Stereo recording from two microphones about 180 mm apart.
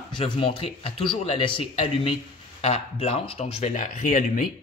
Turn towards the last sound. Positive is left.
turn(degrees=45)  # may be behind; listen again after turning